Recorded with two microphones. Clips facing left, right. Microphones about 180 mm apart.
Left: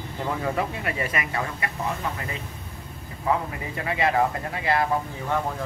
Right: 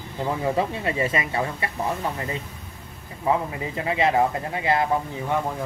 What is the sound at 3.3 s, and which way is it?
Speech, 25° right (ahead or behind).